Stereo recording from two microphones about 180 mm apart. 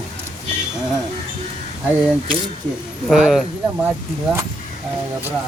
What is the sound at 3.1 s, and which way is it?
Speech, centre (ahead or behind).